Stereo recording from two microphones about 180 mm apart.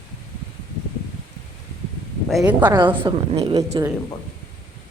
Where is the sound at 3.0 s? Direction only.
35° right (ahead or behind).